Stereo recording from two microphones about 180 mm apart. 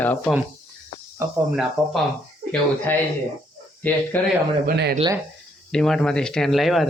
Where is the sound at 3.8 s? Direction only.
10° left (ahead or behind).